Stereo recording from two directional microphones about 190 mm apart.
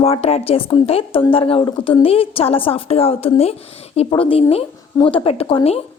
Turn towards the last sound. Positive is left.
turn(degrees=30)  # may be behind; listen again after turning